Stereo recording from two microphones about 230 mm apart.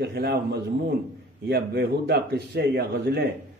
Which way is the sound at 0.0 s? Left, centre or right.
Right.